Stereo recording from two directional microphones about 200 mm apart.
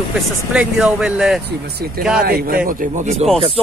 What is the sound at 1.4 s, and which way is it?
Speech, 55° right (ahead or behind).